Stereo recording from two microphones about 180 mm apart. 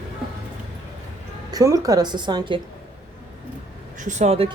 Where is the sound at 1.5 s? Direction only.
20° right (ahead or behind).